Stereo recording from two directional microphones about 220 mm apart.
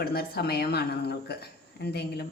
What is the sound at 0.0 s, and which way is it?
A woman's voice, 45° left (ahead or behind).